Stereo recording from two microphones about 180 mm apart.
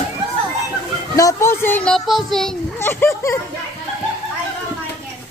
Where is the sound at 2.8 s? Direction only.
15° left (ahead or behind).